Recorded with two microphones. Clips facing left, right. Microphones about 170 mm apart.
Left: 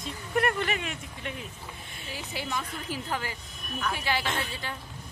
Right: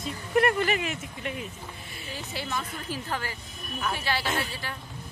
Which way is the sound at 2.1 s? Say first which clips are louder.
Even; 15° left (ahead or behind).